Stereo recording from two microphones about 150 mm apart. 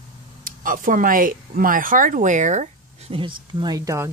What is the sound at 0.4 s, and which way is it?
Speech, 65° right (ahead or behind).